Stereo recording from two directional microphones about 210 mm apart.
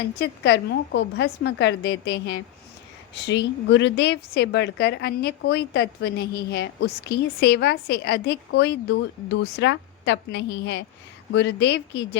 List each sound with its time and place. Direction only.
0.2 s a woman's voice: 55° left (ahead or behind)